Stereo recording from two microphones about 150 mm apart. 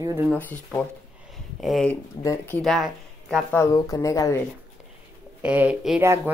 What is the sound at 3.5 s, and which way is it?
Speech, 20° left (ahead or behind).